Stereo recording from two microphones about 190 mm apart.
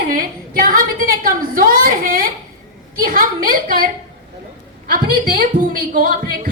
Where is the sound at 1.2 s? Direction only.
50° right (ahead or behind).